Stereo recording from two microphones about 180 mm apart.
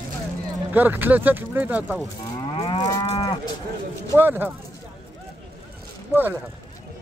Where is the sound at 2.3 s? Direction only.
30° left (ahead or behind).